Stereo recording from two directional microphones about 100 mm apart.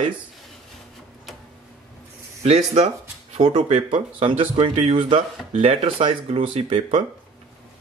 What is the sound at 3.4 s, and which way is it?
Speech, 55° right (ahead or behind).